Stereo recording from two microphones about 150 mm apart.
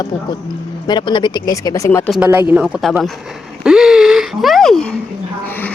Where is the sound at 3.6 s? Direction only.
5° right (ahead or behind).